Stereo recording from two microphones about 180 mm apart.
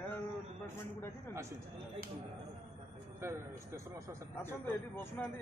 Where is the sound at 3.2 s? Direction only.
15° right (ahead or behind).